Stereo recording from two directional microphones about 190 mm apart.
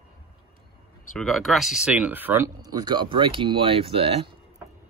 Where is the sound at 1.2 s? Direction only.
Centre (ahead or behind); by 4.2 s 30° right (ahead or behind).